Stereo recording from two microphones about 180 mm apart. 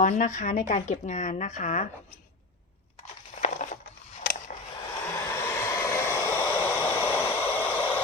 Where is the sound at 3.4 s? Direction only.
45° left (ahead or behind).